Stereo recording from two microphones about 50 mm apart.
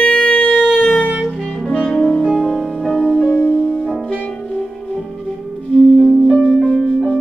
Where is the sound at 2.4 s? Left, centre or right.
Centre.